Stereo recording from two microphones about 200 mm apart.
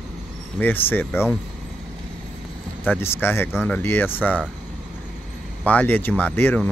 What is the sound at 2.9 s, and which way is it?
Speech, 10° left (ahead or behind).